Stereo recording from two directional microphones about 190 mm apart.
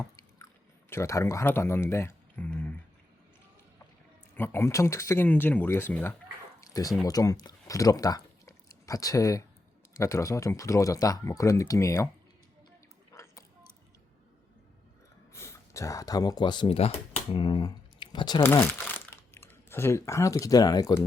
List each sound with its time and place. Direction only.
0.9 s speech: 15° left (ahead or behind)
4.4 s speech: 10° left (ahead or behind)
13.1 s a sound: 15° left (ahead or behind)
15.3 s speech: 15° left (ahead or behind)
18.4 s speech: 10° left (ahead or behind)